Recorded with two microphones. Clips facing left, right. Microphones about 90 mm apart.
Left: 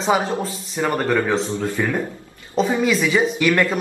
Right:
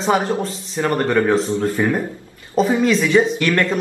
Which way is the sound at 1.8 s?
15° right (ahead or behind).